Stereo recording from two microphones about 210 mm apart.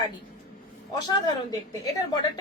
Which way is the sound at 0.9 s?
20° left (ahead or behind).